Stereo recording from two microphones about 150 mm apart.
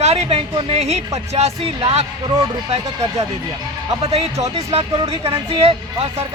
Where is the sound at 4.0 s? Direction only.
45° right (ahead or behind).